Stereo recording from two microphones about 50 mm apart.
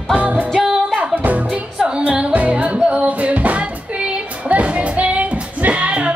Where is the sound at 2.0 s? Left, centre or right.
Right.